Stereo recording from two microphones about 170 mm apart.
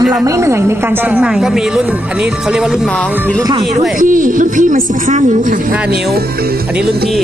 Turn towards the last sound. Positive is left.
turn(degrees=-65)  # may be behind; listen again after turning